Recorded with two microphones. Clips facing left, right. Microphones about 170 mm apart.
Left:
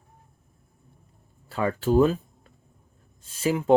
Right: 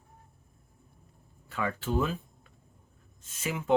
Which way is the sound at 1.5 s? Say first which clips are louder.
Left 8 dB; 35° left (ahead or behind).